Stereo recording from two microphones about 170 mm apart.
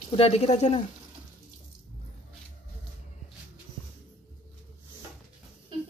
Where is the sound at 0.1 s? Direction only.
35° left (ahead or behind).